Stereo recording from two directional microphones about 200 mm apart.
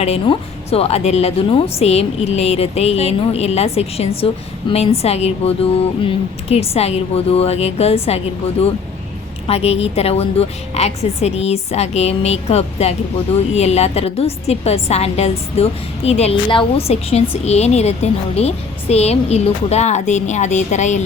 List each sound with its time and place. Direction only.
0.0 s a woman's voice: 30° left (ahead or behind)
9.5 s a woman's voice: 30° left (ahead or behind)